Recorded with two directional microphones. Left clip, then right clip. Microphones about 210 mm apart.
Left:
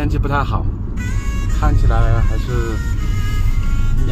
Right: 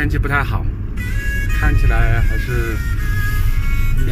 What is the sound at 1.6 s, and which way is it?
Speech, 25° right (ahead or behind).